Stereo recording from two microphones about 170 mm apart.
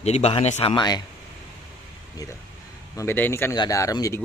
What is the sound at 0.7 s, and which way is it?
Speech, 25° left (ahead or behind).